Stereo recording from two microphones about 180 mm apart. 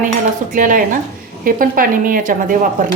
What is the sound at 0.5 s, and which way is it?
Speech, 45° right (ahead or behind).